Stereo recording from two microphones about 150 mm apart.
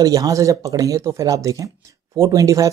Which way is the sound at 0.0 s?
25° right (ahead or behind).